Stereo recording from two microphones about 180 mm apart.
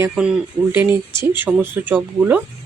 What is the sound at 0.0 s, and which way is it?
Speech, 10° right (ahead or behind).